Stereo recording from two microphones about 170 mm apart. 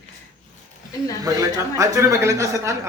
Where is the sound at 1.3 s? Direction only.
20° right (ahead or behind).